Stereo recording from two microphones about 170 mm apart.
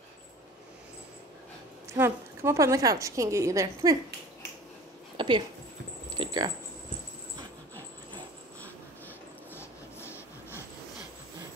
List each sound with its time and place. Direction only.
1.9 s a woman's voice: 15° right (ahead or behind)
5.1 s a sound: 30° right (ahead or behind)
9.5 s train: 15° left (ahead or behind)